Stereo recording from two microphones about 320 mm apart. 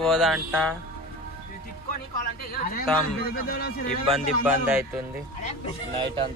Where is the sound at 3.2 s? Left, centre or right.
Left.